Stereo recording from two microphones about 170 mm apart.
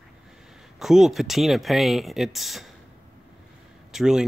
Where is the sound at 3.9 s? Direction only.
5° right (ahead or behind).